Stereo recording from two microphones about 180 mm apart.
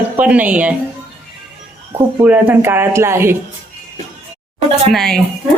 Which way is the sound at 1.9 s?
10° right (ahead or behind).